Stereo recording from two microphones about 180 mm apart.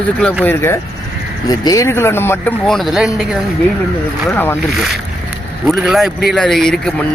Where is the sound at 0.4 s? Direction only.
15° left (ahead or behind).